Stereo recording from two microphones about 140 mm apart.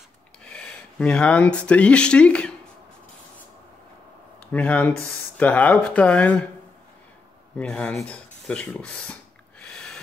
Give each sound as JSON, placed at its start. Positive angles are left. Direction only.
{"t": 0.4, "sound": "speech", "side_deg": 5}
{"t": 4.5, "sound": "speech", "side_deg": 10}
{"t": 7.5, "sound": "speech", "side_deg": 10}